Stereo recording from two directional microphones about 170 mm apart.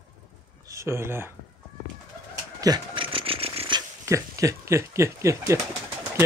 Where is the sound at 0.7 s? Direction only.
15° right (ahead or behind).